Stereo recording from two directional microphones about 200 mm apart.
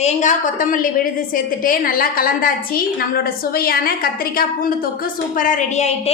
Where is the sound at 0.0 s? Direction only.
40° left (ahead or behind).